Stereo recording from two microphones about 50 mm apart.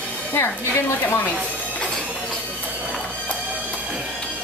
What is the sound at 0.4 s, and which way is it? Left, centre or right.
Speech, left.